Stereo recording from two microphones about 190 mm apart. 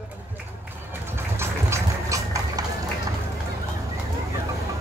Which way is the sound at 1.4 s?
15° right (ahead or behind).